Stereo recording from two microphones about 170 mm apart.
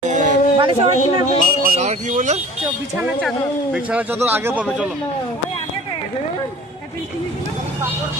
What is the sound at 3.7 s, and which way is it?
Speech, 5° right (ahead or behind).